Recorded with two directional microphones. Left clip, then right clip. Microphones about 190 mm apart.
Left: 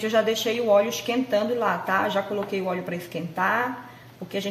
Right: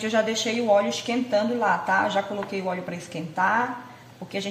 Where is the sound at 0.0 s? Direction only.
10° left (ahead or behind).